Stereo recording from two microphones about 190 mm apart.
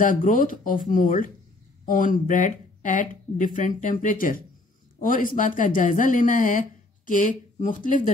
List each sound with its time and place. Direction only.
0.0 s speech: 45° left (ahead or behind)